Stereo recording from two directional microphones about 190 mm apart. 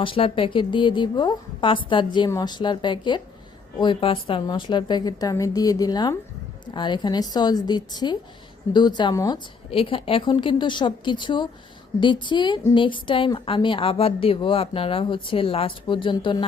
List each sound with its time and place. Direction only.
0.0 s a woman's voice: 30° left (ahead or behind)